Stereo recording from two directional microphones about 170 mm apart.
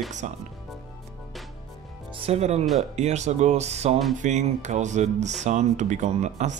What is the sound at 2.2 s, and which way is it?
Speech, 40° right (ahead or behind).